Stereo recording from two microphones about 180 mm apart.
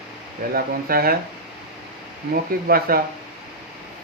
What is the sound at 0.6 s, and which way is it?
Speech, 55° right (ahead or behind).